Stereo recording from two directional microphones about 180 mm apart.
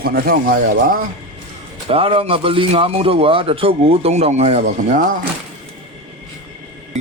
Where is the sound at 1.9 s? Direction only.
30° right (ahead or behind).